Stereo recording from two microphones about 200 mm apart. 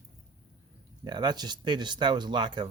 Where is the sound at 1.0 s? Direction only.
20° right (ahead or behind).